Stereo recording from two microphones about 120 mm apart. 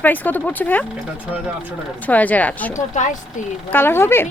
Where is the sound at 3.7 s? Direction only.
20° left (ahead or behind).